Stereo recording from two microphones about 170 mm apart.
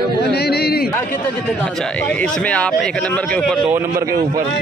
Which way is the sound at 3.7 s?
10° right (ahead or behind).